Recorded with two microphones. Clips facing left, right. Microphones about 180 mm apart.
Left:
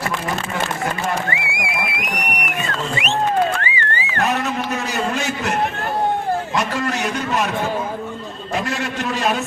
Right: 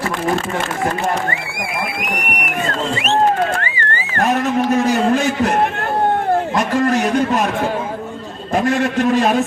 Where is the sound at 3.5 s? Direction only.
45° right (ahead or behind).